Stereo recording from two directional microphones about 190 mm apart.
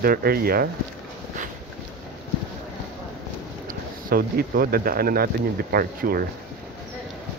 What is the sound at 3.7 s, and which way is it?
Speech, 50° right (ahead or behind).